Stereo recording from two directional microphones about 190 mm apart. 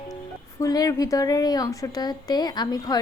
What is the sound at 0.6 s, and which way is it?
A woman's voice, 20° left (ahead or behind).